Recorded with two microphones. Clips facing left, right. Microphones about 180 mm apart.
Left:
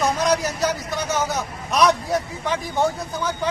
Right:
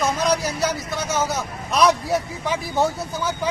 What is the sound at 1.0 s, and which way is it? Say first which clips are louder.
Speech: even; 15° left (ahead or behind).